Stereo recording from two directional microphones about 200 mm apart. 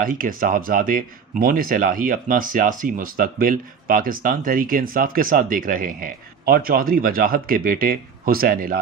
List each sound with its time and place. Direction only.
0.0 s speech: 45° right (ahead or behind)